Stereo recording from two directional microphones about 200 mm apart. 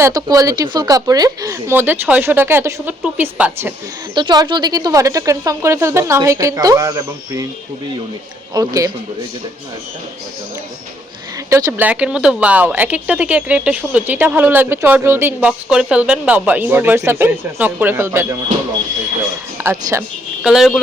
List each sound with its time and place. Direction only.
0.0 s speech: 20° right (ahead or behind)
4.1 s speech: 20° right (ahead or behind)
8.5 s speech: 15° right (ahead or behind)
11.4 s speech: 15° right (ahead or behind)
19.5 s speech: 10° right (ahead or behind)